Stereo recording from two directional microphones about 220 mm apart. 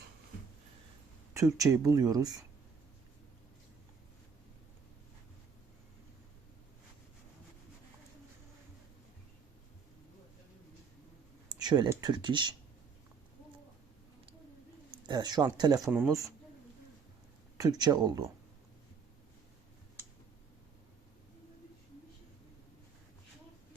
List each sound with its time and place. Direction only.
1.5 s speech: 15° right (ahead or behind)
11.4 s speech: 20° right (ahead or behind)
15.0 s speech: 20° right (ahead or behind)
15.9 s speech: 5° right (ahead or behind)
17.6 s speech: 20° right (ahead or behind)